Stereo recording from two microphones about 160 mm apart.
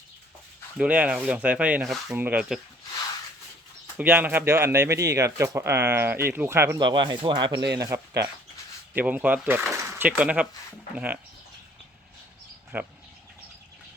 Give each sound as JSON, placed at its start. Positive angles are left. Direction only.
{"t": 0.8, "sound": "speech", "side_deg": -10}
{"t": 3.9, "sound": "speech", "side_deg": -10}
{"t": 6.7, "sound": "speech", "side_deg": -30}
{"t": 12.7, "sound": "speech", "side_deg": -10}